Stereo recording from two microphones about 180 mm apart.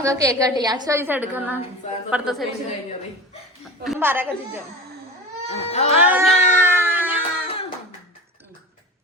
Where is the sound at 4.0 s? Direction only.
10° right (ahead or behind).